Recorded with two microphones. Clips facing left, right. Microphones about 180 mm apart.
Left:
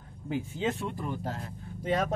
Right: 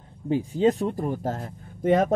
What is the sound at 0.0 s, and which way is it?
Speech, 35° right (ahead or behind).